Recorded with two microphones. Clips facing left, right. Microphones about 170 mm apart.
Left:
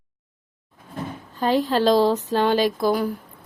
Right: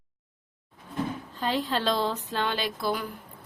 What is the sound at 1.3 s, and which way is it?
A woman's voice, 45° left (ahead or behind).